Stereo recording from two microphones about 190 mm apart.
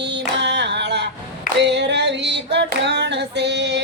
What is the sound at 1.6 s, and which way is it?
Female singing, 65° right (ahead or behind).